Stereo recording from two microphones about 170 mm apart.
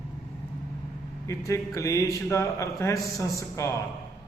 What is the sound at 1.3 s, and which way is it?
A man's voice, 15° left (ahead or behind).